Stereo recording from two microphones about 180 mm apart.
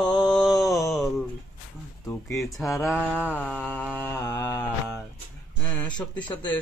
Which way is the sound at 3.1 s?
10° left (ahead or behind).